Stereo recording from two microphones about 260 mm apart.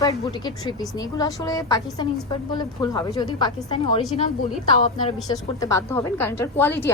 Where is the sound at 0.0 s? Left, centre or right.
Centre.